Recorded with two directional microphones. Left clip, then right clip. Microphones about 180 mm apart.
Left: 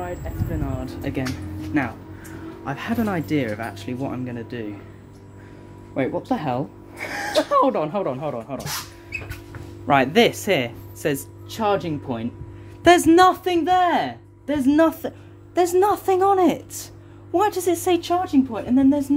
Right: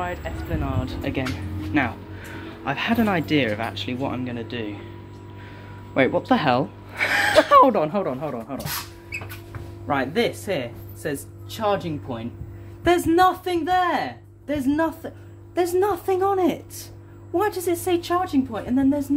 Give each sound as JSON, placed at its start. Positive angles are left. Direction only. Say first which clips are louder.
{"t": 0.0, "sound": "a sound", "louder": "right 2 dB", "side_deg": 10}
{"t": 0.7, "sound": "a woman's voice", "louder": "right 1 dB", "side_deg": 25}
{"t": 5.9, "sound": "speech", "louder": "right 5 dB", "side_deg": 0}
{"t": 7.3, "sound": "speech", "louder": "right 3 dB", "side_deg": 0}
{"t": 8.0, "sound": "speech", "louder": "left 1 dB", "side_deg": 15}
{"t": 9.8, "sound": "speech", "louder": "left 6 dB", "side_deg": 55}
{"t": 15.5, "sound": "a woman's voice", "louder": "left 3 dB", "side_deg": 20}
{"t": 18.0, "sound": "a woman's voice", "louder": "left 2 dB", "side_deg": 15}